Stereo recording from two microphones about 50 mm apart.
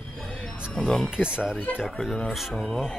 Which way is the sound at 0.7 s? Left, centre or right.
Centre.